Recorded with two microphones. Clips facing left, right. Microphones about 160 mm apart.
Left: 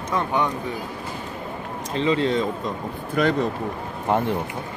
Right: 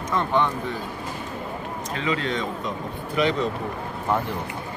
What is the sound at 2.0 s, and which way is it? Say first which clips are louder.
Speech: left 6 dB; 30° left (ahead or behind).